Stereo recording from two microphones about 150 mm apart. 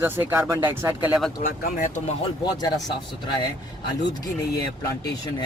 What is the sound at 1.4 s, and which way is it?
Speech, 60° left (ahead or behind).